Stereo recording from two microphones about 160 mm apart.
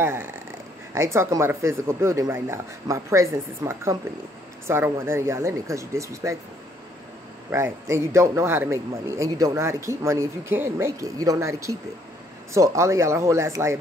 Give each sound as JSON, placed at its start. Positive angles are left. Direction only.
{"t": 0.0, "sound": "a man's voice", "side_deg": -15}
{"t": 7.5, "sound": "a man's voice", "side_deg": -15}